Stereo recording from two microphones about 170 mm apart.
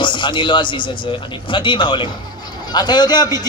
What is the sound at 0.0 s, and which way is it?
A man's voice, 25° left (ahead or behind).